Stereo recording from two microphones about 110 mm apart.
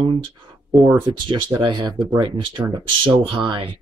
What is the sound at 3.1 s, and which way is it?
Speech, 50° right (ahead or behind).